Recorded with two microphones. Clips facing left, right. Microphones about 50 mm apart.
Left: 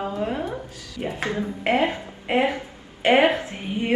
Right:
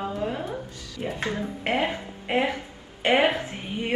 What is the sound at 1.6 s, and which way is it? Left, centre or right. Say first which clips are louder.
Speech: left 4 dB; left.